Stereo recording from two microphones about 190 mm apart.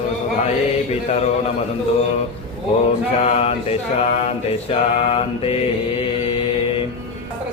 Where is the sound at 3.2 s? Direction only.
35° left (ahead or behind).